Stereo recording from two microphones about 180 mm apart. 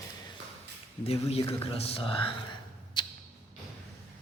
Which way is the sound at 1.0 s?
35° left (ahead or behind).